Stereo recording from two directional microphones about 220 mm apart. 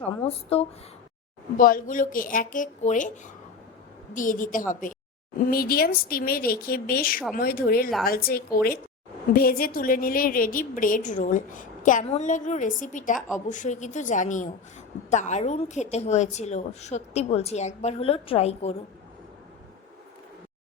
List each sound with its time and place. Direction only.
1.5 s a woman's voice: 40° left (ahead or behind)
4.1 s a woman's voice: 35° left (ahead or behind)
13.1 s a woman's voice: 5° right (ahead or behind)
13.5 s a woman's voice: 35° left (ahead or behind)